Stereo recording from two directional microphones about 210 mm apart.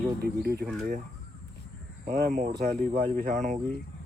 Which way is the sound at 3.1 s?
40° right (ahead or behind).